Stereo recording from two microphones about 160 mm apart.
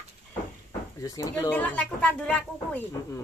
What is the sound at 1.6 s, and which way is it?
Speech, 10° left (ahead or behind).